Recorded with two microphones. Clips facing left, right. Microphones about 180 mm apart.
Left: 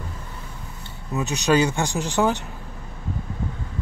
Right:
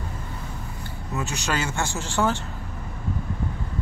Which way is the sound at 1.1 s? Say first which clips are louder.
Left 8 dB; 20° left (ahead or behind).